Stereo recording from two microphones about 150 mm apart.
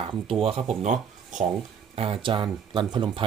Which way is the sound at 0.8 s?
55° right (ahead or behind).